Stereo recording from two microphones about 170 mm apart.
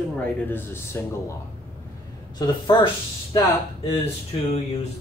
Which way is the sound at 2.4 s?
30° left (ahead or behind).